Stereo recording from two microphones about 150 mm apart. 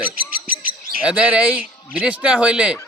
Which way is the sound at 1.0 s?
5° right (ahead or behind).